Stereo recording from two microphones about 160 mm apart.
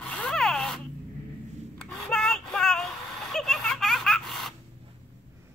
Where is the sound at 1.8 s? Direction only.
5° left (ahead or behind).